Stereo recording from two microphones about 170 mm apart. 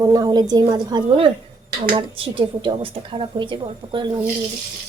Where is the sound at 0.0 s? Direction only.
20° right (ahead or behind).